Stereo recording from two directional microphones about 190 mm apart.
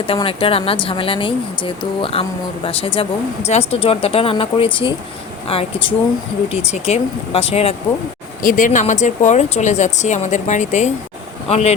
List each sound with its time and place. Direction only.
0.1 s speech: 30° left (ahead or behind)
8.4 s speech: 45° left (ahead or behind)